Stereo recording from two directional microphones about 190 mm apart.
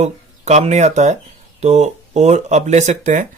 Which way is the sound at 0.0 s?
35° right (ahead or behind).